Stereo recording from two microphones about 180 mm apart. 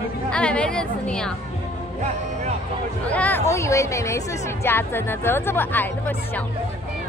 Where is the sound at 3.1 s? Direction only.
10° left (ahead or behind).